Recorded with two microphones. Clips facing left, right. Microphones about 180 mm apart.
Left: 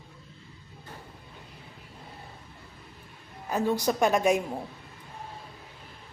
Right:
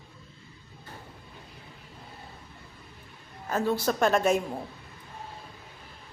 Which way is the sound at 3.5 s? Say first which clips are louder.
Even; 15° left (ahead or behind).